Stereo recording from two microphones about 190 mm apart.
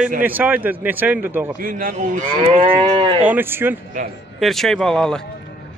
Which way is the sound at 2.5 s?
25° right (ahead or behind).